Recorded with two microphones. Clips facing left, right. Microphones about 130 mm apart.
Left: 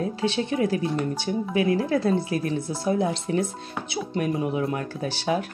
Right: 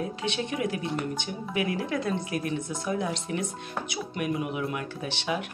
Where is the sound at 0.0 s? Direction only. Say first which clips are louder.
Left 5 dB; 30° left (ahead or behind).